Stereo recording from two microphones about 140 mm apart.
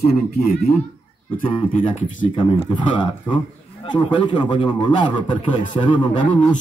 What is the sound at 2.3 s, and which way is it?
Speech, 35° left (ahead or behind).